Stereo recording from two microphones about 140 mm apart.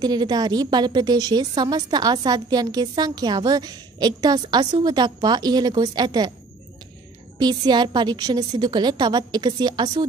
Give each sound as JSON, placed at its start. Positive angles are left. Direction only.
{"t": 0.0, "sound": "a woman's voice", "side_deg": -30}
{"t": 7.3, "sound": "a woman's voice", "side_deg": -30}